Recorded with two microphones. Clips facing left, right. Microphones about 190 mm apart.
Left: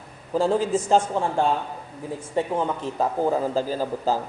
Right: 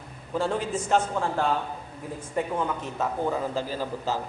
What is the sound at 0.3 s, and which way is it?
A man's voice, 35° left (ahead or behind).